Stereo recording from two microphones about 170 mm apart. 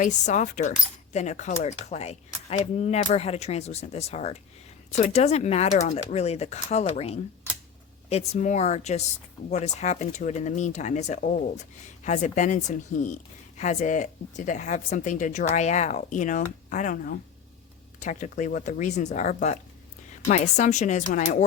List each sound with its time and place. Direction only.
0.0 s speech: 45° left (ahead or behind)